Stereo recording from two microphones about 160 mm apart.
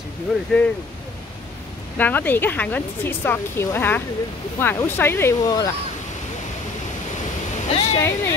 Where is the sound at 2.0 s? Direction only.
10° left (ahead or behind).